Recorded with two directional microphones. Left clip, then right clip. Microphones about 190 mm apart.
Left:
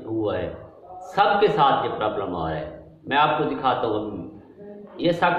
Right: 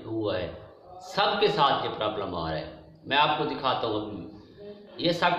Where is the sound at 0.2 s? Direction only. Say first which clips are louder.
Left 3 dB; 5° right (ahead or behind).